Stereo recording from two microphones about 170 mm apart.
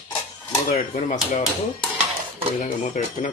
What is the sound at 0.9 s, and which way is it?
Speech, 45° left (ahead or behind).